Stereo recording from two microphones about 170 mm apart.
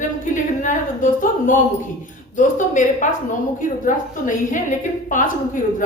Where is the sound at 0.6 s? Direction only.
50° left (ahead or behind).